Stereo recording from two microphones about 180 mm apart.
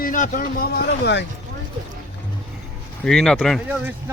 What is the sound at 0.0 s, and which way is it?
Speech, 50° left (ahead or behind).